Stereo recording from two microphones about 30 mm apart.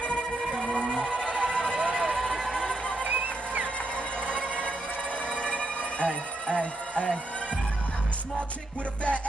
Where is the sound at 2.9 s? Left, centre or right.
Right.